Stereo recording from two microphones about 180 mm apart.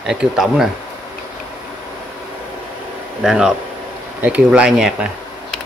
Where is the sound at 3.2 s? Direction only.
5° right (ahead or behind).